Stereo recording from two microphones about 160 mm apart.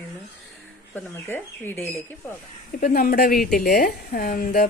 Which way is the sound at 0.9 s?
15° left (ahead or behind).